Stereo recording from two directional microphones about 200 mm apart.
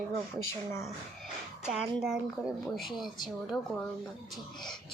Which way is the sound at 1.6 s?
Centre (ahead or behind).